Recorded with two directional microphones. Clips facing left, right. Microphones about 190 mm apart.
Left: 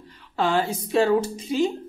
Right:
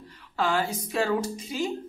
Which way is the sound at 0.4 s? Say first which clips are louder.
Left 3 dB; 25° left (ahead or behind).